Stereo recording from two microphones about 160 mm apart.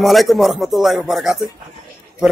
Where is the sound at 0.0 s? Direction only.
Centre (ahead or behind).